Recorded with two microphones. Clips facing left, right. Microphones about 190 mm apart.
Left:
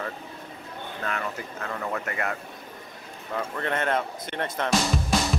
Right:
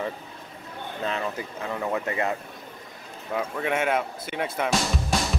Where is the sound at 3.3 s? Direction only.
10° right (ahead or behind).